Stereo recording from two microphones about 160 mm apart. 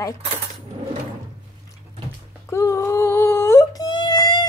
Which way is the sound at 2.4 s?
20° left (ahead or behind).